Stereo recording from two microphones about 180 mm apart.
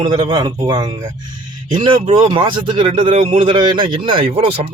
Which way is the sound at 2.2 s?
25° right (ahead or behind).